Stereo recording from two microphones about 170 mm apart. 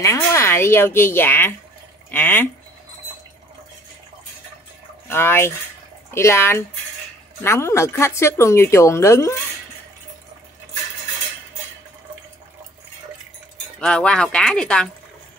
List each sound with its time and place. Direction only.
0.0 s speech: 20° left (ahead or behind)
5.1 s speech: 15° left (ahead or behind)
13.7 s speech: 5° left (ahead or behind)